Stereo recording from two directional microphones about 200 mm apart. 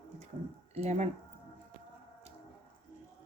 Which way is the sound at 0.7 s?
35° right (ahead or behind).